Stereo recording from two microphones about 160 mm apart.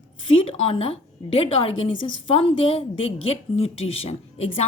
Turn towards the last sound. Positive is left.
turn(degrees=40)  # may be behind; listen again after turning